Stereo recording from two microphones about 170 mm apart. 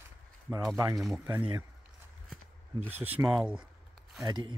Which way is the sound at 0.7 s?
20° right (ahead or behind).